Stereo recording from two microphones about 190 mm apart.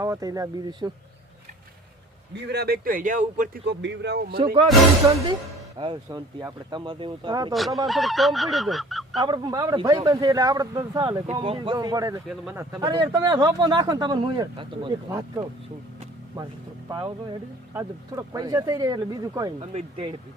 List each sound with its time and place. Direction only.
0.0 s speech: 20° right (ahead or behind)
2.3 s speech: 60° right (ahead or behind); by 3.6 s 45° right (ahead or behind)
3.7 s speech: 65° right (ahead or behind)
4.5 s speech: 25° right (ahead or behind)
7.5 s goose: centre (ahead or behind)
9.2 s speech: 20° right (ahead or behind)
17.7 s speech: 20° right (ahead or behind)
19.5 s speech: 30° right (ahead or behind)